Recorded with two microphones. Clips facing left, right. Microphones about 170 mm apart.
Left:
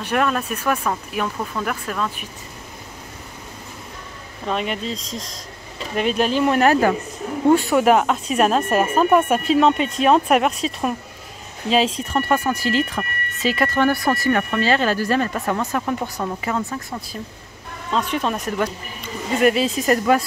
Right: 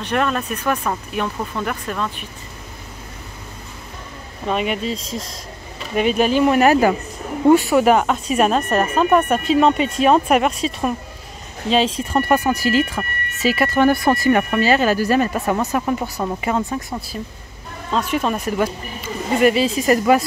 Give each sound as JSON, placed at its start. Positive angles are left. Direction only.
{"t": 0.0, "sound": "speech", "side_deg": 5}
{"t": 4.5, "sound": "speech", "side_deg": -5}
{"t": 12.1, "sound": "speech", "side_deg": -15}
{"t": 16.4, "sound": "a woman's voice", "side_deg": -20}
{"t": 17.9, "sound": "speech", "side_deg": -5}